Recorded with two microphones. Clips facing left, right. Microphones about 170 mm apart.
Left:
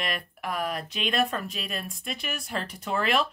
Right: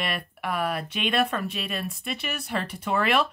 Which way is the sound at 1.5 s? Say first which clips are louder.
Right 3 dB; 5° right (ahead or behind).